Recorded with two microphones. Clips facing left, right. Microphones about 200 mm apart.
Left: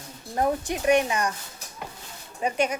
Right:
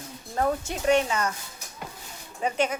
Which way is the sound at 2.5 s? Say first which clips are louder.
Left 1 dB; 10° left (ahead or behind).